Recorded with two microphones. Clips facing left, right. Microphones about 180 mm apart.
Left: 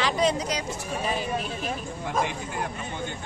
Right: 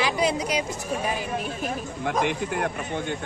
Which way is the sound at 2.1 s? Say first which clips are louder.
Right 4 dB; 65° right (ahead or behind).